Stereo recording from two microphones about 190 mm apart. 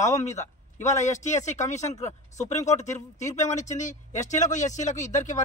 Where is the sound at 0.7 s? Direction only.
15° left (ahead or behind).